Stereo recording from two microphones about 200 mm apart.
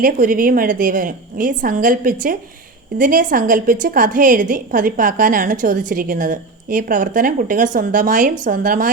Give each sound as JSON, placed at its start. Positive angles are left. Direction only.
{"t": 0.0, "sound": "a woman's voice", "side_deg": -45}